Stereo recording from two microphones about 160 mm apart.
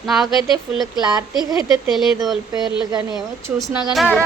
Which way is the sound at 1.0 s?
25° right (ahead or behind).